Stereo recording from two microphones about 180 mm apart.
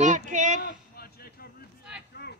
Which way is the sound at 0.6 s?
55° left (ahead or behind).